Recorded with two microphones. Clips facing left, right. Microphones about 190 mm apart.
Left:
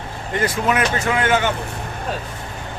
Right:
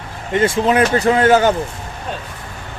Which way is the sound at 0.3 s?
25° right (ahead or behind).